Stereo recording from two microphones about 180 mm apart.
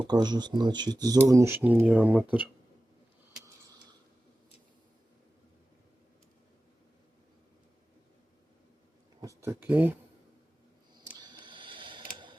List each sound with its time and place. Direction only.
0.0 s speech: 25° right (ahead or behind)
9.4 s speech: 10° right (ahead or behind)
11.2 s camera: 25° right (ahead or behind)